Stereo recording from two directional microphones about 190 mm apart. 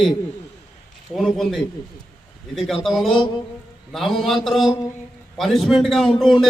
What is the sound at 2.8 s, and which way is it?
A man's voice, centre (ahead or behind).